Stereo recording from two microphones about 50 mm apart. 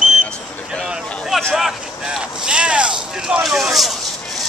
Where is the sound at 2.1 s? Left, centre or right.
Centre.